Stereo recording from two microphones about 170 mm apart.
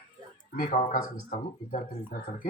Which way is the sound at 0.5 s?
55° left (ahead or behind).